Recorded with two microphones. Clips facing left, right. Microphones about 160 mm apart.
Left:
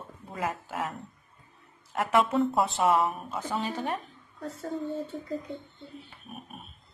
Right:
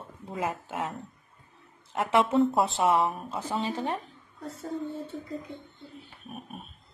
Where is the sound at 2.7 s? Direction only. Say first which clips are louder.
Even; 25° right (ahead or behind).